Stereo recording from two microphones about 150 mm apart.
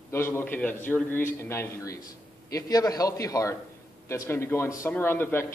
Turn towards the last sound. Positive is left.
turn(degrees=15)  # may be behind; listen again after turning